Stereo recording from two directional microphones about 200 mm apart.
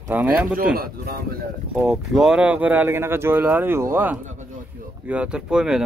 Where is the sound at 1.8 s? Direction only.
Centre (ahead or behind).